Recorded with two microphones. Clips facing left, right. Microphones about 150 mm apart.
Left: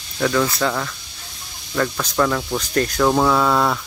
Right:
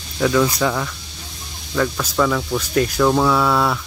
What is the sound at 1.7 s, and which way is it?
Speech, 5° right (ahead or behind).